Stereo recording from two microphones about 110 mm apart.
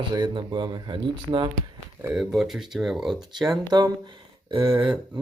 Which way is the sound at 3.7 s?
40° right (ahead or behind).